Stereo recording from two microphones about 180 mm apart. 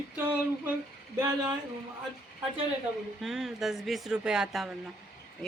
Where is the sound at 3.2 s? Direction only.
Centre (ahead or behind).